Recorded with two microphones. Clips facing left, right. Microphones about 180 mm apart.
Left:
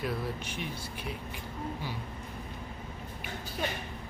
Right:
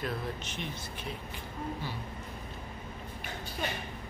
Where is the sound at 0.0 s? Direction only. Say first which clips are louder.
Left 2 dB; 10° left (ahead or behind).